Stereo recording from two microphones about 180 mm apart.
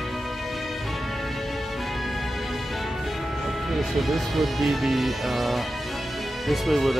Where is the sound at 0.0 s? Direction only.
Centre (ahead or behind).